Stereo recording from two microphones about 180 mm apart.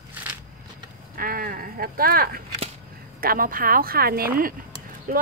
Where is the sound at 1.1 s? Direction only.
55° right (ahead or behind).